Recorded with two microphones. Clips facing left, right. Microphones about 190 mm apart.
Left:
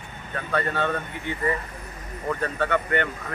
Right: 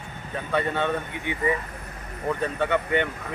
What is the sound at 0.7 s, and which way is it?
Speech, 15° right (ahead or behind).